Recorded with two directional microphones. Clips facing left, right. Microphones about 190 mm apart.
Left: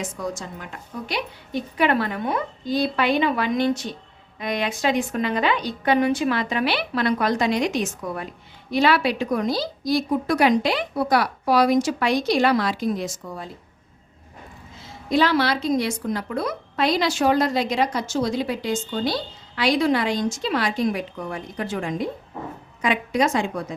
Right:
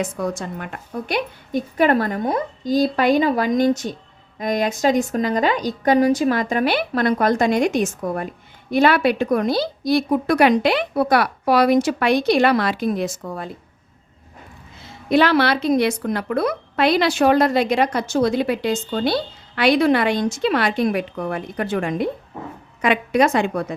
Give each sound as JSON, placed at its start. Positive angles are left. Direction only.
{"t": 0.0, "sound": "a woman's voice", "side_deg": -60}
{"t": 15.1, "sound": "a woman's voice", "side_deg": -65}